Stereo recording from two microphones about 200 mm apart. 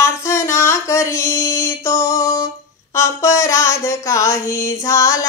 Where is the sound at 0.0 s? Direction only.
15° left (ahead or behind).